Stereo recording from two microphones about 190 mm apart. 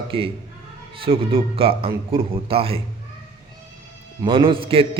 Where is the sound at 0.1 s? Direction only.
30° right (ahead or behind).